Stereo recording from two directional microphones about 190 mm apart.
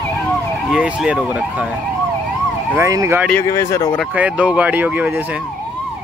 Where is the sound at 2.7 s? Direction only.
15° right (ahead or behind).